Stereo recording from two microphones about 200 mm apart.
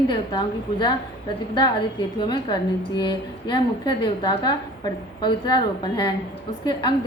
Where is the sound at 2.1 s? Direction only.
25° left (ahead or behind).